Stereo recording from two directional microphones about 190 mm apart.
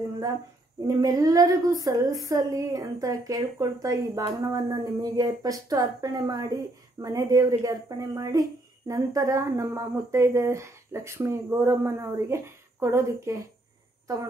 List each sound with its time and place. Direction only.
0.8 s speech: 20° right (ahead or behind)